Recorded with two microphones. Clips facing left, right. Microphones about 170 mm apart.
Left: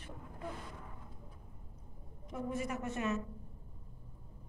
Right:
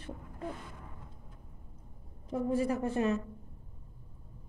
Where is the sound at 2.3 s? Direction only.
30° right (ahead or behind).